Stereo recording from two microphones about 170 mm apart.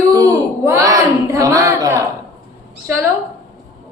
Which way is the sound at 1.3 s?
20° right (ahead or behind).